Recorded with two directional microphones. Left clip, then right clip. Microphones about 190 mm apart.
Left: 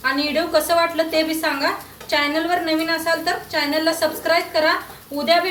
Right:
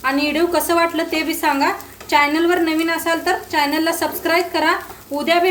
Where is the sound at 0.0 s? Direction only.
55° right (ahead or behind).